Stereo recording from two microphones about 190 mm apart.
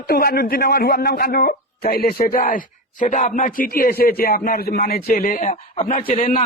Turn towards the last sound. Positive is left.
turn(degrees=35)  # may be behind; listen again after turning